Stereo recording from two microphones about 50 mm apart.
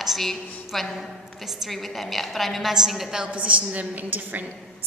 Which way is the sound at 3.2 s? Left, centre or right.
Right.